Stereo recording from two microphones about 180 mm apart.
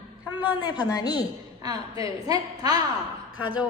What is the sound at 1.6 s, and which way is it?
A woman's voice, 20° right (ahead or behind).